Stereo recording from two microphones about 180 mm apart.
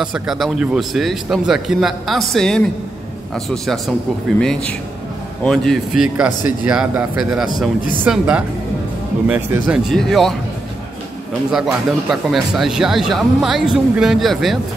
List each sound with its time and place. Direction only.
0.0 s speech: centre (ahead or behind)
11.5 s speech: centre (ahead or behind)